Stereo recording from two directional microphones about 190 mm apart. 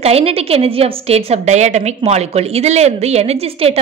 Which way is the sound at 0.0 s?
30° right (ahead or behind).